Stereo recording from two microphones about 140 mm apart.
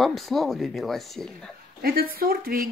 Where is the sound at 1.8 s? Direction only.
90° right.